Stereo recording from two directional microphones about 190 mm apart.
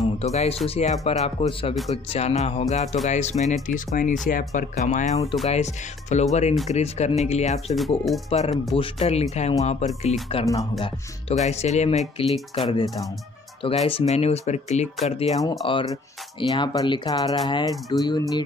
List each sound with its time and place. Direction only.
0.2 s speech: 35° left (ahead or behind)
10.4 s speech: 20° left (ahead or behind)
10.8 s speech: 35° left (ahead or behind)
12.2 s speech: 25° left (ahead or behind)
13.8 s speech: 30° left (ahead or behind)
15.6 s speech: 25° left (ahead or behind)